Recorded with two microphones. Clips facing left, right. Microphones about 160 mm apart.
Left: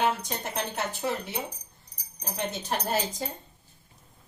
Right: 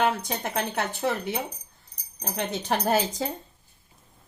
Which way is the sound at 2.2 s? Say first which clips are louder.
Right 3 dB; 80° right.